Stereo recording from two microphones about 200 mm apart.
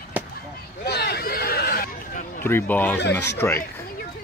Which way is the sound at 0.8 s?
55° left (ahead or behind).